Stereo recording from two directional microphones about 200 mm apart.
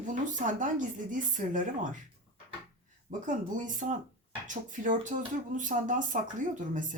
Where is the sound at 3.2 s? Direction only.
40° right (ahead or behind).